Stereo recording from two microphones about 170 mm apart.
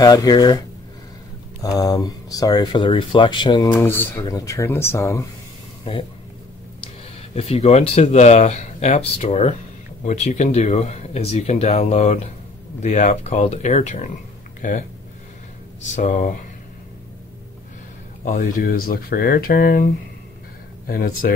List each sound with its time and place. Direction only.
0.0 s speech: 20° left (ahead or behind)
3.7 s speech: 15° left (ahead or behind)
5.9 s speech: 30° left (ahead or behind)
7.2 s speech: 35° left (ahead or behind)
15.8 s speech: 45° left (ahead or behind)
18.2 s speech: 50° left (ahead or behind)